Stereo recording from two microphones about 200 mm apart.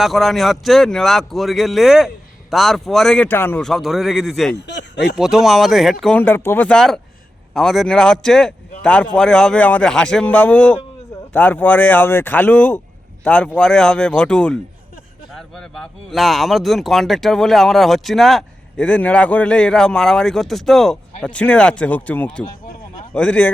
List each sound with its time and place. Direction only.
0.0 s speech: centre (ahead or behind)
4.5 s speech: 60° left (ahead or behind)
5.1 s speech: centre (ahead or behind)